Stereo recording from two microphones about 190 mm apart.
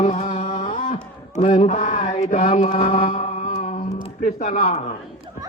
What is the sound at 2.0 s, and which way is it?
Mantra, 40° left (ahead or behind).